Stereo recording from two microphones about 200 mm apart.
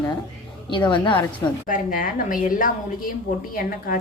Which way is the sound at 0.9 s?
25° left (ahead or behind).